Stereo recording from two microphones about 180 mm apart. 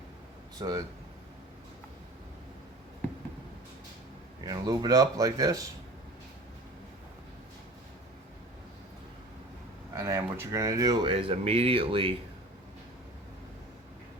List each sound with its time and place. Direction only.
0.6 s speech: 20° right (ahead or behind)
4.4 s speech: 20° right (ahead or behind)
9.9 s speech: 15° right (ahead or behind)